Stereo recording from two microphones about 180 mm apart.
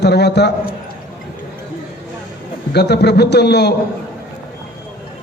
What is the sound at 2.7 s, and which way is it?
A man's voice, 65° left (ahead or behind).